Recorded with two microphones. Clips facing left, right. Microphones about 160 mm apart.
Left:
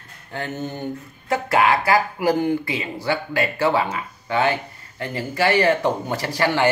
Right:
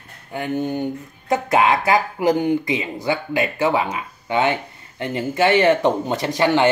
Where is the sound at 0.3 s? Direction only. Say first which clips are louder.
Right 5 dB; 15° right (ahead or behind).